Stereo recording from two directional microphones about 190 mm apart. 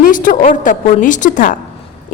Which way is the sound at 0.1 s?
45° left (ahead or behind).